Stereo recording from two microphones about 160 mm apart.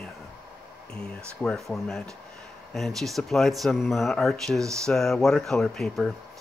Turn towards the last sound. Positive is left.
turn(degrees=0)  # may be behind; listen again after turning